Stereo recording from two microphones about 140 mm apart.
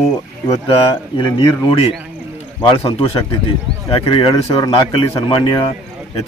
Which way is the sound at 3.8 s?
40° left (ahead or behind).